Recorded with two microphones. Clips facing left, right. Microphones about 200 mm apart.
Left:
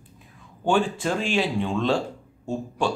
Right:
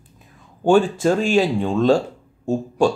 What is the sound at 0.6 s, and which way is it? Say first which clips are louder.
Speech: right 7 dB; 40° right (ahead or behind).